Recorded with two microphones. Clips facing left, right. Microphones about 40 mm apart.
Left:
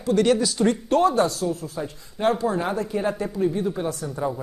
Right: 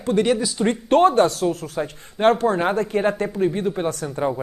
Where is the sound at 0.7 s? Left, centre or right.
Right.